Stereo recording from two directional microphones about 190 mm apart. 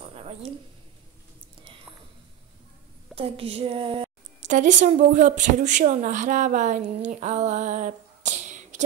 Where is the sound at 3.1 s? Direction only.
30° right (ahead or behind).